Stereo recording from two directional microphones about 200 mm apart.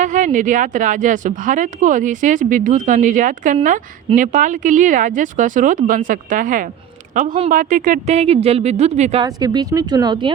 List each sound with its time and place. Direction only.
0.0 s a woman's voice: 40° right (ahead or behind)
9.2 s speech: 20° right (ahead or behind)